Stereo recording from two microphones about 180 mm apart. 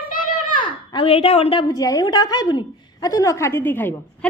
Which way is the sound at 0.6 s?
30° left (ahead or behind).